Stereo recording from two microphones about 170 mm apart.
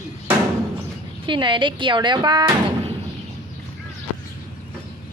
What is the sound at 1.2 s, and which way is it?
Speech, 30° right (ahead or behind).